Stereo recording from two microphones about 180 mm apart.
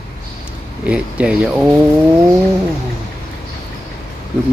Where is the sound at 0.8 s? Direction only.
5° right (ahead or behind).